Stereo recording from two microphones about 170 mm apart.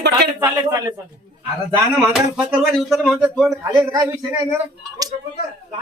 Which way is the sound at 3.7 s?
20° right (ahead or behind).